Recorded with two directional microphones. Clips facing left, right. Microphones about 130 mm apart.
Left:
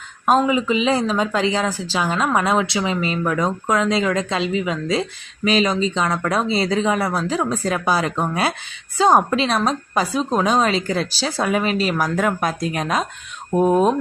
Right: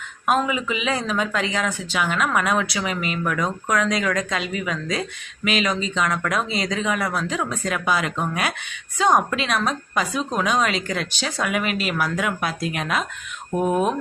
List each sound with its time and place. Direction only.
0.3 s a woman's voice: 30° left (ahead or behind)